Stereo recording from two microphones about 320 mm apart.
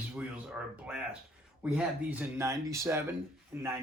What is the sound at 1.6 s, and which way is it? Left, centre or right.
Speech, centre.